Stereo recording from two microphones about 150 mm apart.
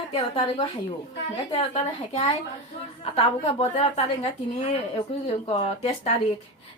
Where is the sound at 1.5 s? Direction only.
45° left (ahead or behind).